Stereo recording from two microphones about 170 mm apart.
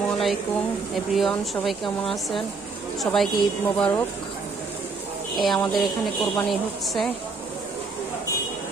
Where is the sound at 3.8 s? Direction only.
10° left (ahead or behind).